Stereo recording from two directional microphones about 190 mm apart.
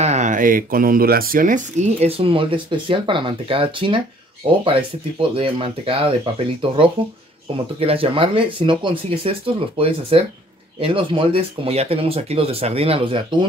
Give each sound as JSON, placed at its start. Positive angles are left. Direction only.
{"t": 0.0, "sound": "speech", "side_deg": -40}
{"t": 5.3, "sound": "speech", "side_deg": -30}